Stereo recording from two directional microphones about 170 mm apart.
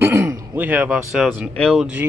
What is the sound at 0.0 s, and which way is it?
A man's voice, 15° right (ahead or behind).